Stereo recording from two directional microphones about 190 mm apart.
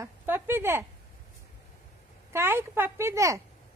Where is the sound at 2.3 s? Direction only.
10° right (ahead or behind).